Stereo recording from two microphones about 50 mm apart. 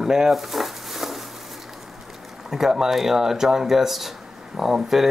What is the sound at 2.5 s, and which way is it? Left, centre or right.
Speech, centre.